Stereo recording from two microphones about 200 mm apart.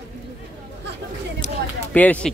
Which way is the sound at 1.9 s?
10° left (ahead or behind).